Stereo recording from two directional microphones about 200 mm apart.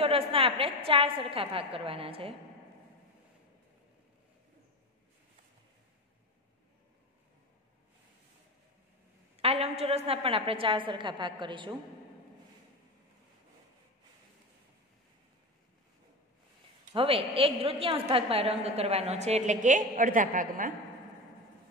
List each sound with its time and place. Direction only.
0.0 s a woman's voice: 30° right (ahead or behind)
9.4 s a woman's voice: 30° right (ahead or behind)
16.9 s a woman's voice: 25° right (ahead or behind)